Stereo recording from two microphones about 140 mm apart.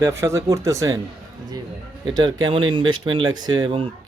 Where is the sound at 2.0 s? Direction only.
30° right (ahead or behind).